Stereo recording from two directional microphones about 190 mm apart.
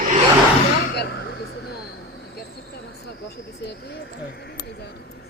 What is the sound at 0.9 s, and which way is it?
Speech, 60° left (ahead or behind).